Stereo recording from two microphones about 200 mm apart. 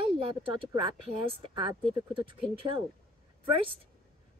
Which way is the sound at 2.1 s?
25° right (ahead or behind).